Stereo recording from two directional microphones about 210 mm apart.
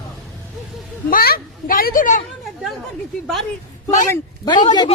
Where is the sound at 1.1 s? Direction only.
45° left (ahead or behind).